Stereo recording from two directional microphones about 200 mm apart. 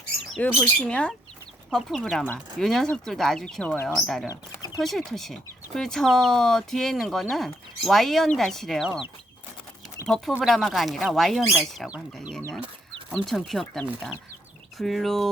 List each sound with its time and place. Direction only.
0.3 s speech: 5° left (ahead or behind)
4.3 s a sound: 20° left (ahead or behind)
4.8 s speech: centre (ahead or behind)
10.1 s speech: centre (ahead or behind)